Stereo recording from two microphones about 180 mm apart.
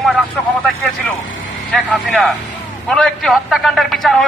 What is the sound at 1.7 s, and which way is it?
A man's voice, 5° left (ahead or behind).